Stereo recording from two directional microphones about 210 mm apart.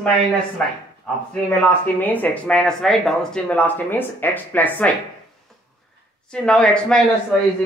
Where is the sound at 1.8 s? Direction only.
10° left (ahead or behind).